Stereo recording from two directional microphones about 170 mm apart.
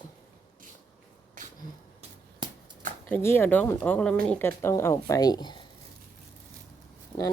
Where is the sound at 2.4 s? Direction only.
25° right (ahead or behind).